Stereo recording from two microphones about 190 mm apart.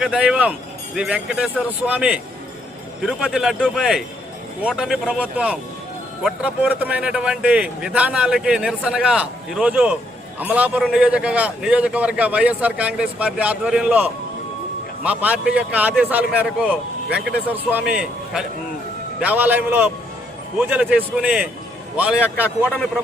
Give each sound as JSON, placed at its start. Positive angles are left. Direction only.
{"t": 0.0, "sound": "a man's voice", "side_deg": -5}